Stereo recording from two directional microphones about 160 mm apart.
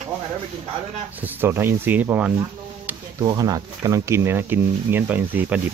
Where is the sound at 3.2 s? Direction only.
25° right (ahead or behind).